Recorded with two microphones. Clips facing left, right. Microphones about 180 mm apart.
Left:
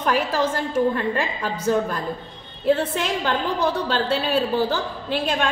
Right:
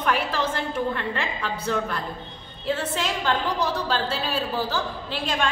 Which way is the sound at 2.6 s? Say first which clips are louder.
Left 6 dB; 55° left (ahead or behind).